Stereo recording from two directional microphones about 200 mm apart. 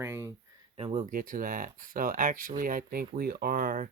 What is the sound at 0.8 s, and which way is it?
Speech, 30° right (ahead or behind).